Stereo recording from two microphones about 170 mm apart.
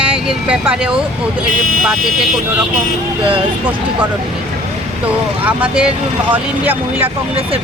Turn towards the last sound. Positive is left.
turn(degrees=-10)  # may be behind; listen again after turning